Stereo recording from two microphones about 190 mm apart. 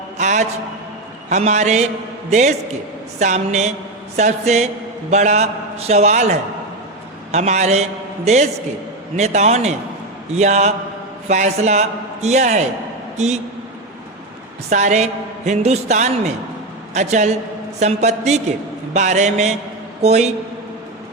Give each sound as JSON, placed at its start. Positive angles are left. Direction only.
{"t": 0.2, "sound": "a man's voice", "side_deg": -40}
{"t": 7.3, "sound": "a man's voice", "side_deg": -35}
{"t": 14.7, "sound": "a man's voice", "side_deg": -40}